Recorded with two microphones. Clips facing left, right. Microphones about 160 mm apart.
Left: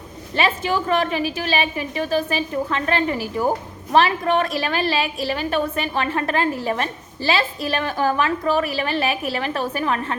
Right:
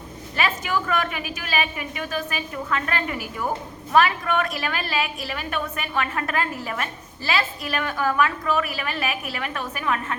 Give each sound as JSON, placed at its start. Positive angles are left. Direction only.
{"t": 0.3, "sound": "a woman's voice", "side_deg": 30}